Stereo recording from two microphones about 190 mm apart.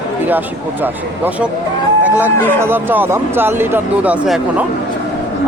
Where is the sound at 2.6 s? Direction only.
10° right (ahead or behind).